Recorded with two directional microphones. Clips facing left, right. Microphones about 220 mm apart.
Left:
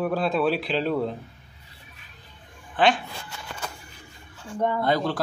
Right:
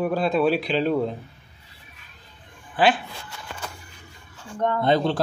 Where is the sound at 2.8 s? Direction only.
5° right (ahead or behind).